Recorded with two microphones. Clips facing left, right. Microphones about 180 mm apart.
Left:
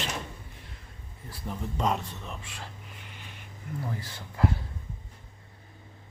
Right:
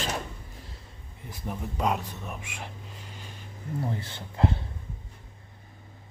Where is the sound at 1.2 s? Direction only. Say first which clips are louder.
Right 1 dB; 10° right (ahead or behind).